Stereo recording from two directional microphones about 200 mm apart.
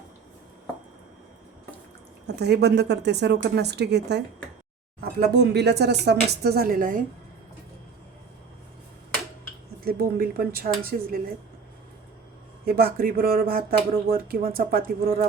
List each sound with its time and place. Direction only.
2.2 s a woman's voice: 55° right (ahead or behind)
5.3 s speech: 55° right (ahead or behind)
9.8 s speech: 50° right (ahead or behind)
12.6 s speech: 50° right (ahead or behind)